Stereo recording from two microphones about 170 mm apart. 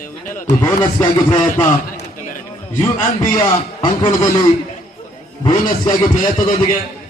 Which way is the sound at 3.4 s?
25° left (ahead or behind).